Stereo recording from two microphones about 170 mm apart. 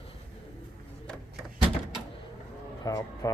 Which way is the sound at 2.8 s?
15° left (ahead or behind).